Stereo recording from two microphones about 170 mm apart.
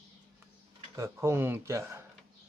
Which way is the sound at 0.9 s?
15° right (ahead or behind).